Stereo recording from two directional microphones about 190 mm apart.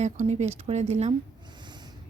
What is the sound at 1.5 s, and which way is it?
Snort, 25° right (ahead or behind).